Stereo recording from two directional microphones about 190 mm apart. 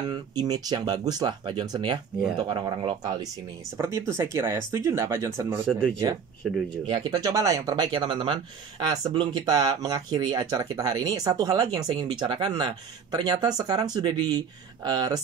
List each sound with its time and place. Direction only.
0.1 s speech: 20° right (ahead or behind)
5.7 s speech: 5° left (ahead or behind)
6.9 s speech: 20° right (ahead or behind)